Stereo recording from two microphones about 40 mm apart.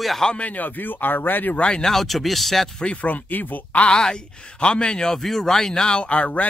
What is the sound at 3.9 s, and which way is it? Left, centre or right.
A man's voice, centre.